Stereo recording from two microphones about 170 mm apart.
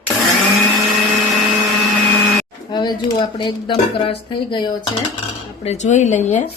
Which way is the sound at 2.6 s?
25° left (ahead or behind).